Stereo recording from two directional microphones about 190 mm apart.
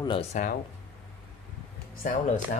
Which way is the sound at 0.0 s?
30° left (ahead or behind).